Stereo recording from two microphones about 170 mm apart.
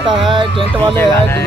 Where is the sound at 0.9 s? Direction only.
15° left (ahead or behind).